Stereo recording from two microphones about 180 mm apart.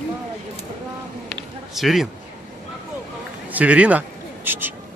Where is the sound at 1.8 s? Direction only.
Centre (ahead or behind).